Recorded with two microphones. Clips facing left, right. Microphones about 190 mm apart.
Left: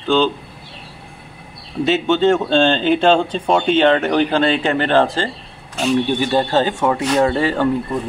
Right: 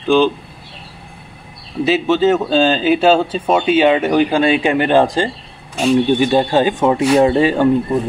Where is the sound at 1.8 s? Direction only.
5° right (ahead or behind).